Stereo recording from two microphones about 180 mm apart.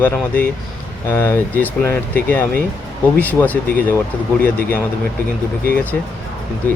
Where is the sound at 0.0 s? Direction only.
10° left (ahead or behind).